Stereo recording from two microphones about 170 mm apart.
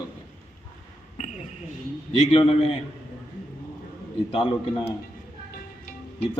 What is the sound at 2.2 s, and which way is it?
Speech, 35° left (ahead or behind).